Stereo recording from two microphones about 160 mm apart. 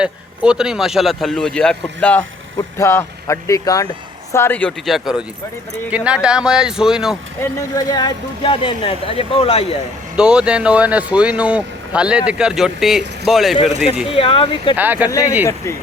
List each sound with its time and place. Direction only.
0.0 s a man's voice: 5° right (ahead or behind); by 4.7 s 10° left (ahead or behind)
4.9 s speech: centre (ahead or behind)
7.8 s speech: 25° left (ahead or behind)
10.2 s speech: 5° right (ahead or behind)
14.1 s speech: 35° left (ahead or behind)
14.8 s speech: 10° right (ahead or behind)